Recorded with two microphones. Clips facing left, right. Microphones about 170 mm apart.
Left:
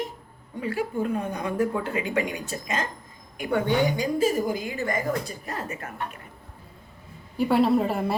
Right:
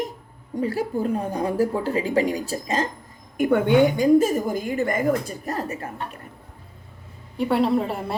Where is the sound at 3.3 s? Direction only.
50° right (ahead or behind).